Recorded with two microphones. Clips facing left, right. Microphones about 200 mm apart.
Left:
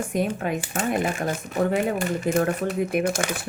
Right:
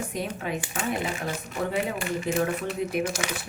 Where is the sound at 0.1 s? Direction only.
50° left (ahead or behind).